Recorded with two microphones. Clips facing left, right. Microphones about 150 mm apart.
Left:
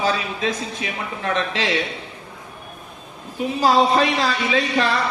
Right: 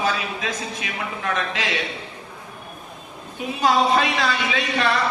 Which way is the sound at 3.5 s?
30° left (ahead or behind).